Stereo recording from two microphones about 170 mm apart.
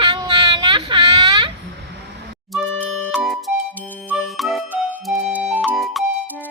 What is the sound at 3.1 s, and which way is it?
Music, centre (ahead or behind).